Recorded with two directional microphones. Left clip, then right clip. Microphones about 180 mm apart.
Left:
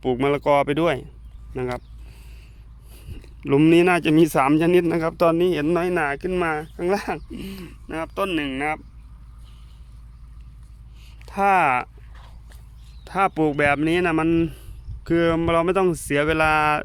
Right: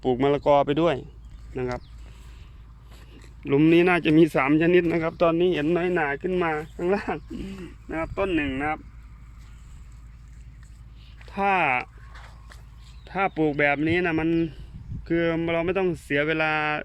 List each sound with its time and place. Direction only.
0.0 s speech: centre (ahead or behind)
3.1 s speech: 15° left (ahead or behind)
11.3 s speech: 25° left (ahead or behind)
12.1 s a sound: 20° right (ahead or behind)
13.1 s speech: 20° left (ahead or behind)